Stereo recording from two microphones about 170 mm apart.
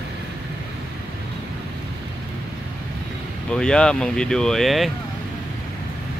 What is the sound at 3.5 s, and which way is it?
Speech, 5° left (ahead or behind).